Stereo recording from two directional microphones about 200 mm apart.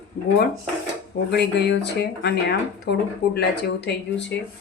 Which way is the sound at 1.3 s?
55° left (ahead or behind).